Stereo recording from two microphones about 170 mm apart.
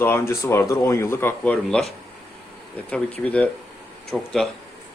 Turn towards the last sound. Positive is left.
turn(degrees=0)  # may be behind; listen again after turning